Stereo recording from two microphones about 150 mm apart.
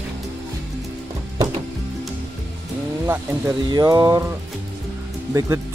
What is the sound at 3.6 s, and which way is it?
Speech, 25° right (ahead or behind).